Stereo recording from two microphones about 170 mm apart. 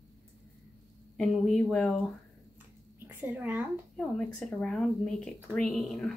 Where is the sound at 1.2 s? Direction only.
Centre (ahead or behind).